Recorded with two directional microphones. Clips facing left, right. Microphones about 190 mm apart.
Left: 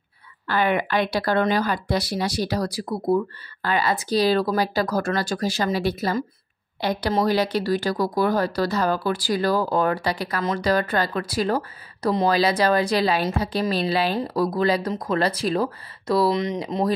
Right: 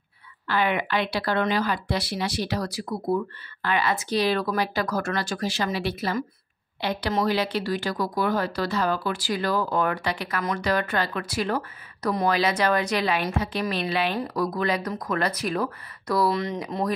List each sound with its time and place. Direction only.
0.5 s speech: 45° left (ahead or behind); by 16.9 s 25° left (ahead or behind)